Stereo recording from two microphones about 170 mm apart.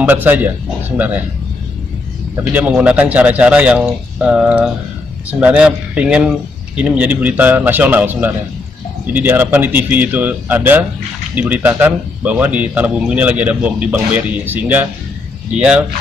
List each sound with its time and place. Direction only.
0.0 s speech: 10° right (ahead or behind)
2.3 s speech: 10° right (ahead or behind)